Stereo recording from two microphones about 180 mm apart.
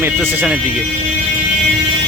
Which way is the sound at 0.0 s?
10° right (ahead or behind).